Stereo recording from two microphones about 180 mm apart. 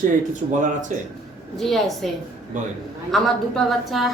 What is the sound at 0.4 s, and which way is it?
Speech, 40° right (ahead or behind).